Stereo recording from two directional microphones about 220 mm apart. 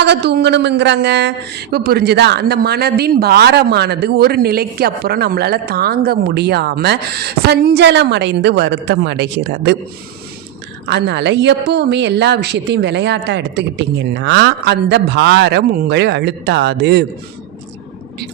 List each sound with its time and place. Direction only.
0.0 s speech: 50° right (ahead or behind)
10.8 s speech: 50° right (ahead or behind)